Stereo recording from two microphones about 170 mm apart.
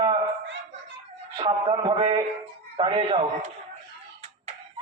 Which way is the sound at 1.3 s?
30° right (ahead or behind).